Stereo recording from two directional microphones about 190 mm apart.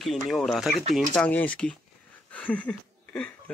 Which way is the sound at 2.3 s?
5° left (ahead or behind).